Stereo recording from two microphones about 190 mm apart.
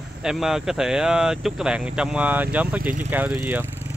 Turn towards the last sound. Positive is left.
turn(degrees=-10)  # may be behind; listen again after turning